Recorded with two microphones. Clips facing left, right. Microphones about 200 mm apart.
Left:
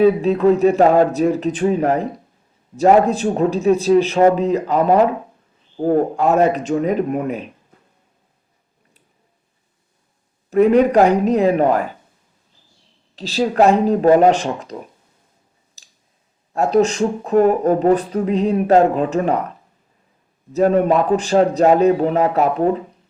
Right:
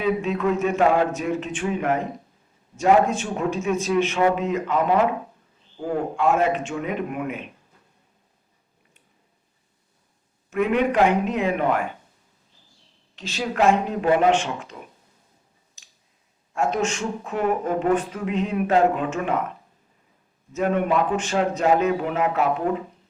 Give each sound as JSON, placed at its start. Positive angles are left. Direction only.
{"t": 0.0, "sound": "speech", "side_deg": 35}
{"t": 10.5, "sound": "speech", "side_deg": 35}
{"t": 13.1, "sound": "speech", "side_deg": 35}
{"t": 15.8, "sound": "clicking", "side_deg": 35}
{"t": 16.5, "sound": "speech", "side_deg": 35}
{"t": 20.5, "sound": "speech", "side_deg": 35}